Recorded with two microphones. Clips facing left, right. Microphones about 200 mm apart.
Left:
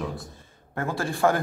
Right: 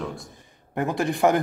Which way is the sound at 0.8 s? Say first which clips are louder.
Right 3 dB; 20° right (ahead or behind).